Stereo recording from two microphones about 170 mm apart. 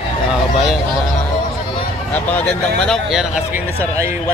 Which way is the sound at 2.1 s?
10° left (ahead or behind).